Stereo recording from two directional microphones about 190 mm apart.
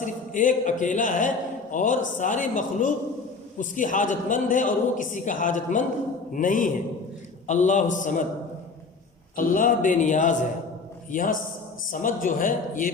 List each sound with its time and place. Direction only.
0.0 s a man's voice: 40° left (ahead or behind)
9.3 s a man's voice: 45° left (ahead or behind)